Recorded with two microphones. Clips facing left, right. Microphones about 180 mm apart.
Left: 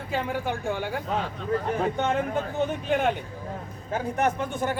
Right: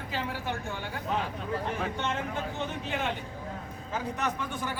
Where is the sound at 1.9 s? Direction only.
50° left (ahead or behind).